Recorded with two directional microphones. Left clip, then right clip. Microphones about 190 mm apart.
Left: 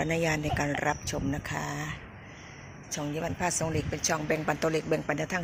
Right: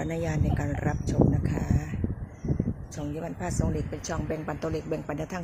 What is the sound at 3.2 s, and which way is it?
Speech, 5° right (ahead or behind).